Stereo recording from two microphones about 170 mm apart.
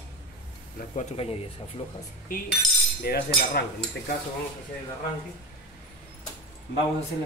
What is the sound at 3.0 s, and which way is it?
Speech, 65° left (ahead or behind).